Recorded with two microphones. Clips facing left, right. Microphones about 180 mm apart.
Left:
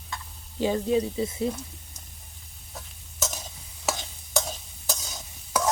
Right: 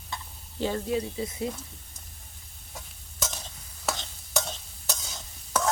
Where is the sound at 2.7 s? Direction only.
5° left (ahead or behind).